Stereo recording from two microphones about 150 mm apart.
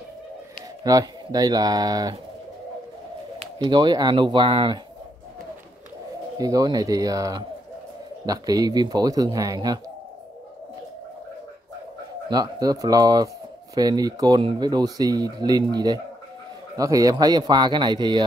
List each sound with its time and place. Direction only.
0.8 s speech: 25° right (ahead or behind)
3.5 s speech: 30° right (ahead or behind)
6.3 s speech: 25° right (ahead or behind)
12.3 s speech: 25° right (ahead or behind)